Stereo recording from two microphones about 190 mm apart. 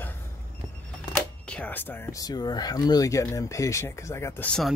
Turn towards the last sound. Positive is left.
turn(degrees=5)  # may be behind; listen again after turning